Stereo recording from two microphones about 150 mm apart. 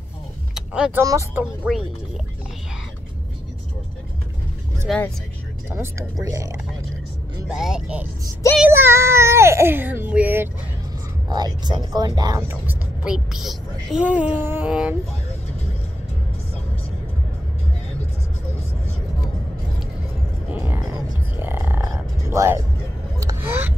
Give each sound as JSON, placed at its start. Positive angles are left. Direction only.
{"t": 0.6, "sound": "vehicle", "side_deg": -5}
{"t": 1.0, "sound": "speech", "side_deg": -15}
{"t": 4.9, "sound": "speech", "side_deg": 0}
{"t": 5.7, "sound": "speech", "side_deg": -20}
{"t": 7.4, "sound": "speech", "side_deg": -5}
{"t": 11.2, "sound": "speech", "side_deg": -25}
{"t": 12.4, "sound": "speech", "side_deg": -15}
{"t": 20.5, "sound": "music", "side_deg": -15}
{"t": 23.1, "sound": "a sound", "side_deg": -20}